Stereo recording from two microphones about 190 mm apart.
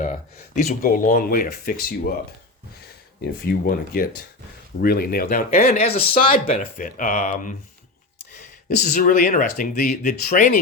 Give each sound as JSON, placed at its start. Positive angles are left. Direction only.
{"t": 0.0, "sound": "speech", "side_deg": 40}
{"t": 3.2, "sound": "speech", "side_deg": 50}
{"t": 5.8, "sound": "speech", "side_deg": 30}
{"t": 6.7, "sound": "speech", "side_deg": 45}
{"t": 8.8, "sound": "speech", "side_deg": 45}